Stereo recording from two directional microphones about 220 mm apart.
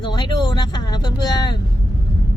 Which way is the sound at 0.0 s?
20° left (ahead or behind).